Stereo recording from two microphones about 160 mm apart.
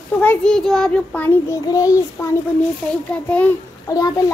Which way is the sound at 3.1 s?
5° left (ahead or behind).